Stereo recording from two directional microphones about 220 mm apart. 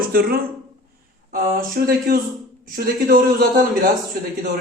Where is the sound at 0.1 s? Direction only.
40° right (ahead or behind).